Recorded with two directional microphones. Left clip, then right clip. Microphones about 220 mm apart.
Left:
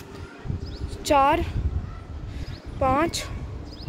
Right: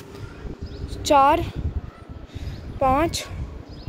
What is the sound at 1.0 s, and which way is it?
Speech, 10° right (ahead or behind).